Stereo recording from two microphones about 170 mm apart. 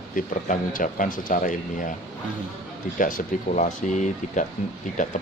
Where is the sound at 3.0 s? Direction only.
55° left (ahead or behind).